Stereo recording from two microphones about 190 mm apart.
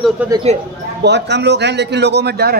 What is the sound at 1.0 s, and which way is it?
A man's voice, 65° right (ahead or behind).